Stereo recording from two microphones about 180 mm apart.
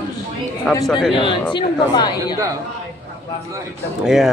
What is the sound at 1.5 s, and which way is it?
Speech, 25° left (ahead or behind).